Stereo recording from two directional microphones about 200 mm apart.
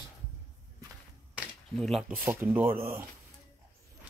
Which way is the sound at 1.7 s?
Centre (ahead or behind).